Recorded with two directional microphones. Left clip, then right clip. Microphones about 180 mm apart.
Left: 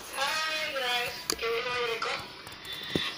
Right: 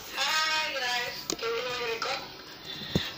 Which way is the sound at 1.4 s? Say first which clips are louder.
Left 1 dB; 50° right (ahead or behind).